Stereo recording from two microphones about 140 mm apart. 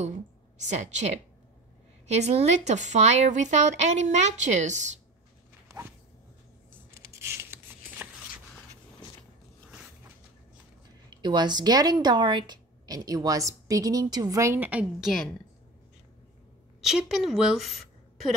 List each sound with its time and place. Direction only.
0.7 s a woman's voice: 55° right (ahead or behind)
6.9 s a sound: 20° right (ahead or behind)
11.1 s speech: 30° right (ahead or behind); by 15.1 s 5° right (ahead or behind)
16.8 s a woman's voice: 5° right (ahead or behind)